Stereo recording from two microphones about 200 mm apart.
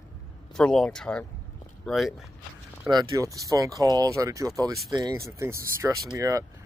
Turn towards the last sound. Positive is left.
turn(degrees=-15)  # may be behind; listen again after turning